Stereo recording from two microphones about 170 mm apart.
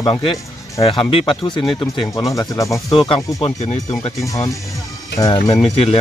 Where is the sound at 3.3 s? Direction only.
35° left (ahead or behind).